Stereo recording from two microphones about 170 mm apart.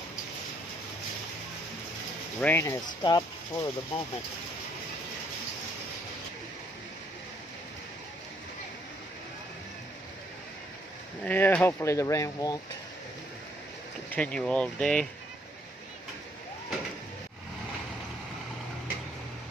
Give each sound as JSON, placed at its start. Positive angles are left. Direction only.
{"t": 2.4, "sound": "speech", "side_deg": 15}
{"t": 11.2, "sound": "speech", "side_deg": 10}
{"t": 14.1, "sound": "speech", "side_deg": 5}